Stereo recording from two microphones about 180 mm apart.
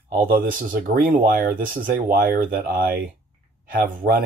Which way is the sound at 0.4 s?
50° right (ahead or behind).